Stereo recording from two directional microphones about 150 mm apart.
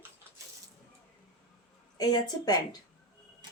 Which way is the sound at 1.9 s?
25° left (ahead or behind).